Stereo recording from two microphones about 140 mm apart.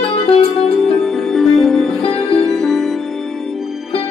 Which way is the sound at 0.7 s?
Centre (ahead or behind).